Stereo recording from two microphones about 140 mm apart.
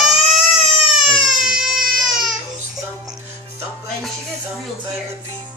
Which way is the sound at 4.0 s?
Centre (ahead or behind).